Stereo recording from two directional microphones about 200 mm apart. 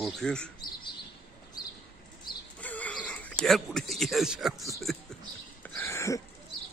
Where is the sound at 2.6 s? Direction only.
5° left (ahead or behind).